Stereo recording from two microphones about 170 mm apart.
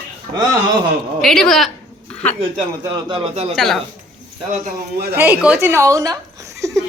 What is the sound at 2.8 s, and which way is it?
Speech, 25° right (ahead or behind).